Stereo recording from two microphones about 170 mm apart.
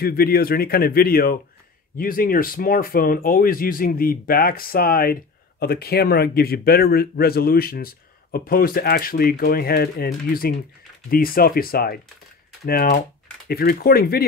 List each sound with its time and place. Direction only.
0.0 s speech: 65° left (ahead or behind)
11.1 s speech: 60° left (ahead or behind)